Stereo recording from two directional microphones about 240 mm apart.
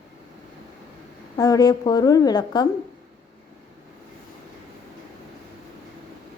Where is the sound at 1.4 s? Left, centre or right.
Centre.